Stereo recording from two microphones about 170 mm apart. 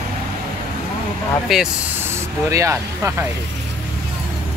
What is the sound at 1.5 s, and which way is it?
Speech, centre (ahead or behind).